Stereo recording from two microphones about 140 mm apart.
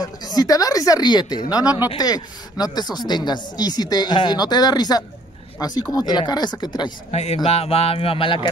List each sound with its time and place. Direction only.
0.0 s speech: 30° left (ahead or behind)
7.1 s speech: 50° left (ahead or behind)